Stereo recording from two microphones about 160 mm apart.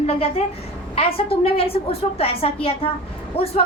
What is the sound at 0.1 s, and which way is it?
A woman's voice, 35° left (ahead or behind).